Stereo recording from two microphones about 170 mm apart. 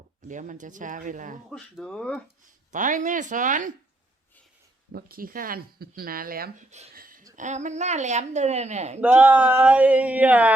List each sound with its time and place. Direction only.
0.3 s a woman's voice: 50° right (ahead or behind)
1.5 s speech: centre (ahead or behind)
2.7 s a woman's voice: 50° right (ahead or behind)
4.9 s speech: 60° right (ahead or behind)
6.7 s speech: 40° right (ahead or behind)
6.9 s a sound: 55° right (ahead or behind)
7.3 s a woman's voice: 45° right (ahead or behind)
9.0 s speech: 10° right (ahead or behind)